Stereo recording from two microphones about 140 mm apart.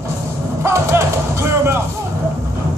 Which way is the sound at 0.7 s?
20° right (ahead or behind).